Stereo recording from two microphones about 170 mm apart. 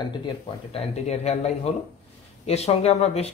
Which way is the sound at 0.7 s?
40° left (ahead or behind).